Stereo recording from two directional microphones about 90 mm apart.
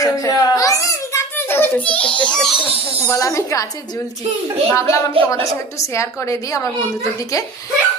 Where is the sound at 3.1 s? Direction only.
35° left (ahead or behind).